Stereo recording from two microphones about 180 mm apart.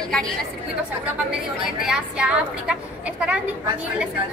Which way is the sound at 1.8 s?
5° right (ahead or behind).